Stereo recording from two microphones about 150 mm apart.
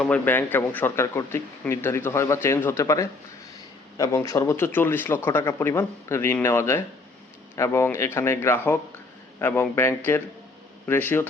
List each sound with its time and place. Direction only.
0.0 s a man's voice: 10° left (ahead or behind)